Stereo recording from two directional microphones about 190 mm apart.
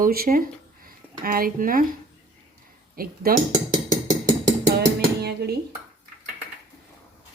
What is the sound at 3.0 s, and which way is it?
Speech, 50° right (ahead or behind).